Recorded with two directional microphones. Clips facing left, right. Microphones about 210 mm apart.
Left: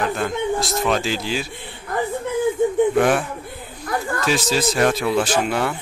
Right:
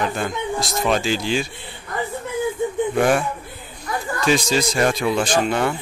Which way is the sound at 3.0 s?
Centre (ahead or behind).